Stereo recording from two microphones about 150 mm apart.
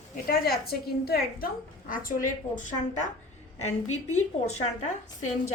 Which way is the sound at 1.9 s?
65° left (ahead or behind).